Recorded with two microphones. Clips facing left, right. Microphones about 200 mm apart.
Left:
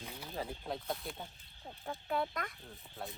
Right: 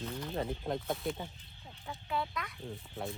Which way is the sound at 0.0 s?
10° left (ahead or behind).